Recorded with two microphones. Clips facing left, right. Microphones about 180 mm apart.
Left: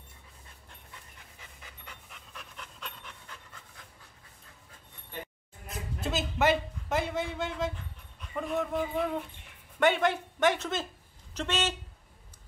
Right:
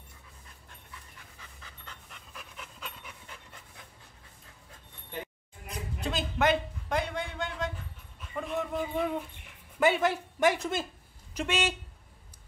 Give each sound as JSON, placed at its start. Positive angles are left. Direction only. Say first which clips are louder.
{"t": 1.4, "sound": "pant", "louder": "left 1 dB", "side_deg": 15}
{"t": 2.0, "sound": "pant", "louder": "even", "side_deg": 0}
{"t": 5.7, "sound": "a man's voice", "louder": "left 1 dB", "side_deg": 5}
{"t": 8.4, "sound": "a sound", "louder": "left 2 dB", "side_deg": 0}
{"t": 9.8, "sound": "speech", "louder": "even", "side_deg": -5}